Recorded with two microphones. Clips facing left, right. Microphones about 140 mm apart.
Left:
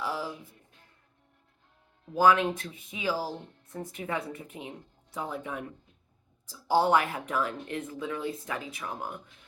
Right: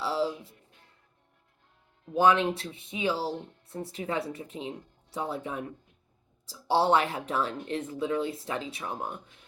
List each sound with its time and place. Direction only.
0.0 s music: 30° right (ahead or behind)
2.1 s speech: 25° right (ahead or behind)